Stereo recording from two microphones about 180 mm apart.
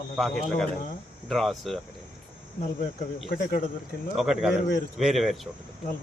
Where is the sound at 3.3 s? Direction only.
50° left (ahead or behind).